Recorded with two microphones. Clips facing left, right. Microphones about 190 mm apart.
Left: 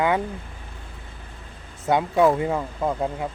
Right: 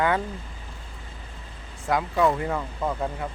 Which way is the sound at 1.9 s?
25° left (ahead or behind).